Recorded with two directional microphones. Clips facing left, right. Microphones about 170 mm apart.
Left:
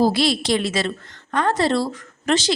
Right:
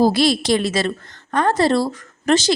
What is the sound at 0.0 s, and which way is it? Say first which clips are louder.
A woman's voice: right 3 dB; 45° right (ahead or behind).